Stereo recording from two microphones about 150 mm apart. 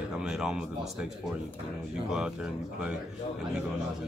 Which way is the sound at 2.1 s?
5° right (ahead or behind).